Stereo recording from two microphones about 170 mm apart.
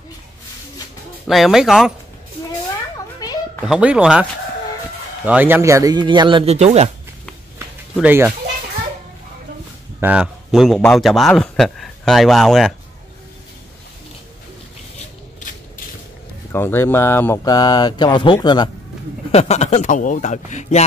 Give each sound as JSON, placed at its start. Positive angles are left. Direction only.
{"t": 1.2, "sound": "speech", "side_deg": 0}
{"t": 3.2, "sound": "a sound", "side_deg": 20}
{"t": 3.6, "sound": "speech", "side_deg": -5}
{"t": 8.0, "sound": "speech", "side_deg": -10}
{"t": 9.9, "sound": "speech", "side_deg": -5}
{"t": 16.5, "sound": "speech", "side_deg": 15}
{"t": 19.3, "sound": "a man's voice", "side_deg": 40}